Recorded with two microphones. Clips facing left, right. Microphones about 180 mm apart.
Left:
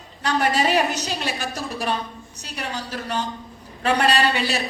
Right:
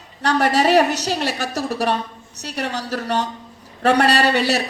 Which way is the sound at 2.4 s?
40° right (ahead or behind).